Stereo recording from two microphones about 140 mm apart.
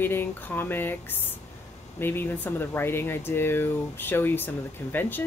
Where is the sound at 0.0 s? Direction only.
15° left (ahead or behind).